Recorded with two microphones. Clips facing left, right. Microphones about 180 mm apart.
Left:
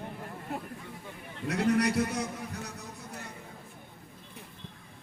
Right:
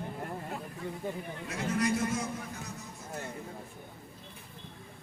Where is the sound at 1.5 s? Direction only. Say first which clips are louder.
Left 4 dB; 70° left (ahead or behind).